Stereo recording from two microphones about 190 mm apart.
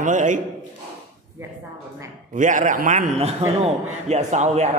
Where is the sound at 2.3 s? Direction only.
45° right (ahead or behind).